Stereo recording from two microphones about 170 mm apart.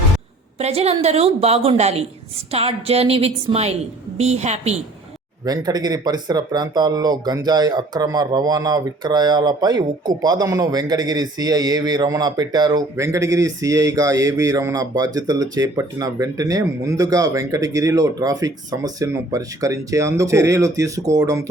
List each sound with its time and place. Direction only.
0.6 s a woman's voice: 40° right (ahead or behind)
5.5 s speech: 20° right (ahead or behind)